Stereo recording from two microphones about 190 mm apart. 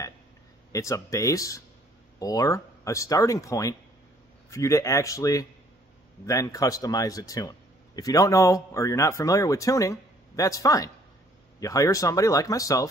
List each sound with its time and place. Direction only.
0.7 s speech: 15° left (ahead or behind)